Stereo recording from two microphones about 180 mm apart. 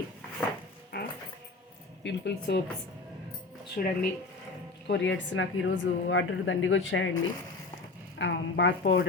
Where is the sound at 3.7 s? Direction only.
55° left (ahead or behind).